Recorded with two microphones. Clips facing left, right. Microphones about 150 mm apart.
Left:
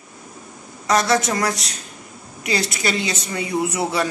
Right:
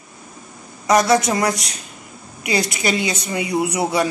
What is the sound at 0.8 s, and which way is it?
A woman's voice, 10° right (ahead or behind).